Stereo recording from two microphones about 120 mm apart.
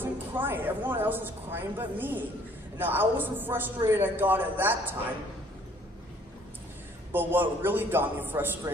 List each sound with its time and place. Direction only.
0.0 s a woman's voice: 15° right (ahead or behind)
7.1 s a woman's voice: 15° right (ahead or behind)